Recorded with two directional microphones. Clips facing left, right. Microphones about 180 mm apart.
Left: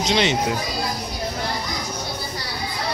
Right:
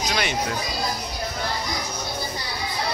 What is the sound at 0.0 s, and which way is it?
Speech, 20° left (ahead or behind).